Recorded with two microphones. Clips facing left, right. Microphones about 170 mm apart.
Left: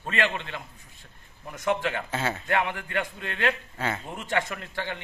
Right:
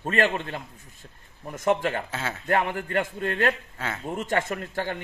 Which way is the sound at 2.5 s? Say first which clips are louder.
Right 6 dB; 40° right (ahead or behind).